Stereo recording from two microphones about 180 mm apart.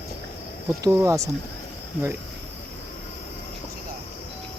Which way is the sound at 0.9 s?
15° right (ahead or behind).